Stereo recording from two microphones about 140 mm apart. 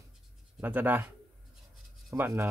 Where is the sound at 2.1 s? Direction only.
15° right (ahead or behind).